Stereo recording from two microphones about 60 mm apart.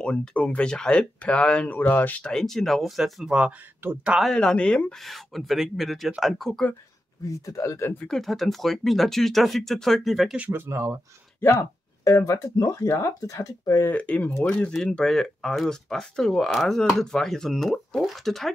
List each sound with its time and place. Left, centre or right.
0.0 s speech: centre
1.8 s speech: left
2.2 s speech: centre
3.3 s speech: centre
3.8 s speech: right
4.3 s speech: centre
5.0 s speech: centre
7.2 s speech: left
8.1 s speech: centre
10.5 s speech: right
12.3 s speech: left
13.9 s speech: left
14.5 s speech: centre